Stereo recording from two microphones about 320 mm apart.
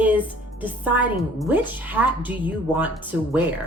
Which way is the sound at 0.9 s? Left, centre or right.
Centre.